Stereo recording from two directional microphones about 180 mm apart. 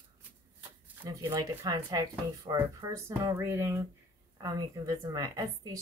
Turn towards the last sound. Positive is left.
turn(degrees=-20)  # may be behind; listen again after turning